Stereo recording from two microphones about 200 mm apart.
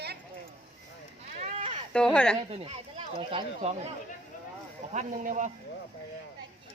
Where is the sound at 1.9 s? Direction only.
5° left (ahead or behind).